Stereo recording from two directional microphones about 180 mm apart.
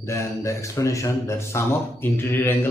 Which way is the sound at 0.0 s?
15° left (ahead or behind).